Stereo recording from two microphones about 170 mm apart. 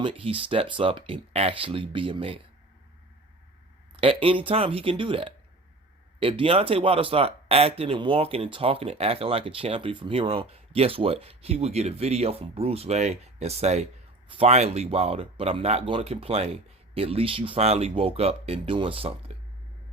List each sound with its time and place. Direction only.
0.0 s speech: 30° right (ahead or behind)
3.9 s speech: 30° right (ahead or behind)